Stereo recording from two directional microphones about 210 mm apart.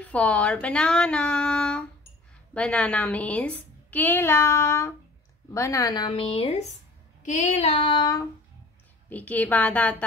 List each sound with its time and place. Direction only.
0.0 s a woman's voice: 5° left (ahead or behind)
5.5 s child singing: 15° left (ahead or behind)
9.1 s a woman's voice: 5° left (ahead or behind)